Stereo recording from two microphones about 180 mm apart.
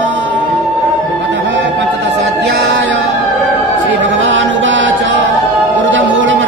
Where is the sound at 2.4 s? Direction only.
80° right.